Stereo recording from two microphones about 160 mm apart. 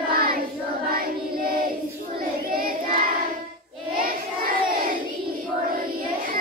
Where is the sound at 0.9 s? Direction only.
65° right (ahead or behind).